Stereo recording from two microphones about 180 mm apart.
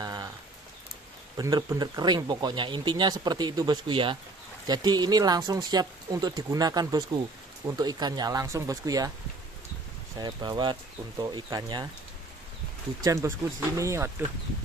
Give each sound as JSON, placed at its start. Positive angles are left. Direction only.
{"t": 0.0, "sound": "a sound", "side_deg": -20}
{"t": 1.3, "sound": "speech", "side_deg": -20}
{"t": 10.1, "sound": "speech", "side_deg": -25}
{"t": 13.0, "sound": "speech", "side_deg": -15}